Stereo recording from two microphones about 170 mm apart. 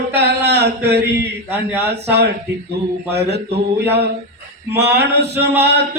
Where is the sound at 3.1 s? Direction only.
75° right (ahead or behind).